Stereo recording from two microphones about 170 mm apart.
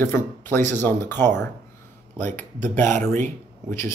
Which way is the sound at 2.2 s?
45° right (ahead or behind).